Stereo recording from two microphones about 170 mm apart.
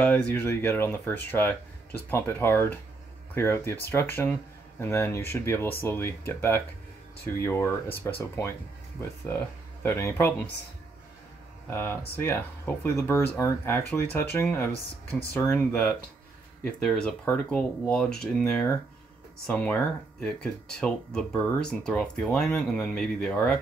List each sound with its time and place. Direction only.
0.0 s speech: 10° left (ahead or behind)
9.8 s speech: 15° left (ahead or behind)
11.7 s speech: 15° left (ahead or behind)
20.8 s speech: 5° left (ahead or behind)